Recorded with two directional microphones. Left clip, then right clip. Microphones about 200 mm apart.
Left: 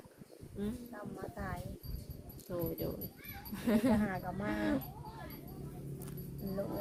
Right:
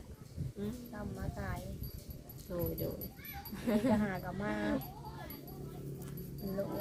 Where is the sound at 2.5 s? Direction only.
25° left (ahead or behind).